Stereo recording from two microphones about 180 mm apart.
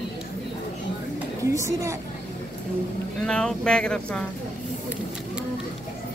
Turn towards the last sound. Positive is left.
turn(degrees=5)  # may be behind; listen again after turning